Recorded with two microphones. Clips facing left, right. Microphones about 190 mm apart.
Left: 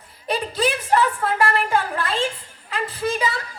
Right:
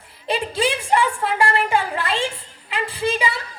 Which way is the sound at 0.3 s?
25° right (ahead or behind).